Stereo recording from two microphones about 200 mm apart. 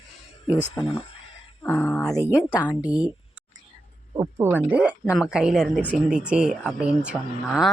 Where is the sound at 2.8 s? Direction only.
5° right (ahead or behind).